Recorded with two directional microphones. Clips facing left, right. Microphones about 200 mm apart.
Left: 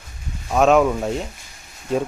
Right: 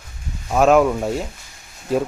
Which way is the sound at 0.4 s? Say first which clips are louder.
Right 1 dB; centre (ahead or behind).